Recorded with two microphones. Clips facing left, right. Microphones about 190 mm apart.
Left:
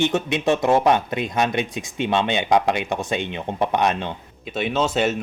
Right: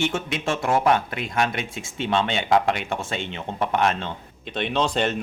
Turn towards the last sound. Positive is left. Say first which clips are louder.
# left 2 dB
turn(degrees=5)  # may be behind; listen again after turning